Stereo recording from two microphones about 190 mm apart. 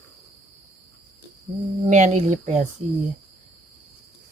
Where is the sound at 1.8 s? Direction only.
40° right (ahead or behind).